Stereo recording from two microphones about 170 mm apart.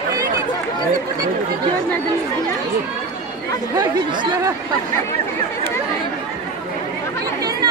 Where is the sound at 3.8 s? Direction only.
20° right (ahead or behind).